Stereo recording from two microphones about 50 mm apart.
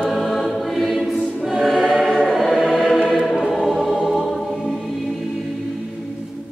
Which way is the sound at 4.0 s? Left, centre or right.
Centre.